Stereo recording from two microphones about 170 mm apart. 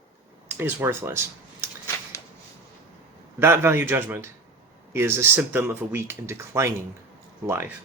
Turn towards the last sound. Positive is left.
turn(degrees=-15)  # may be behind; listen again after turning